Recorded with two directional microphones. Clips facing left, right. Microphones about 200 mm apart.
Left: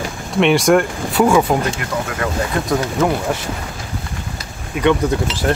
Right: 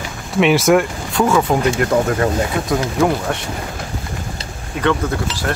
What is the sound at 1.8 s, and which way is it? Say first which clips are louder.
Speech: right 7 dB; 40° right (ahead or behind).